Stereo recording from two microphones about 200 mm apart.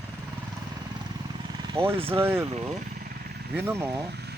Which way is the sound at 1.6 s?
25° right (ahead or behind).